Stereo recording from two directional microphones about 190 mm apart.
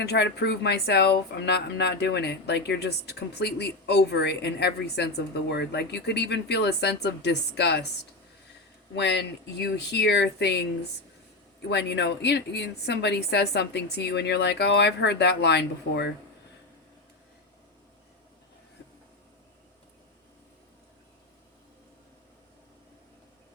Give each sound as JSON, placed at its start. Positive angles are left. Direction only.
{"t": 0.0, "sound": "speech", "side_deg": 60}
{"t": 9.0, "sound": "speech", "side_deg": 65}
{"t": 11.7, "sound": "speech", "side_deg": 65}